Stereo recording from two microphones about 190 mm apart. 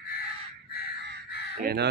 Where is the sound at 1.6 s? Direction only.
55° right (ahead or behind).